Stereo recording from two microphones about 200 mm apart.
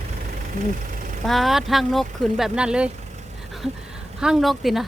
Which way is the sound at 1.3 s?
Centre (ahead or behind).